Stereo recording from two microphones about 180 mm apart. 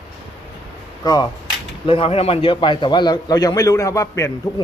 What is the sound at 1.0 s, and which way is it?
Speech, 20° left (ahead or behind).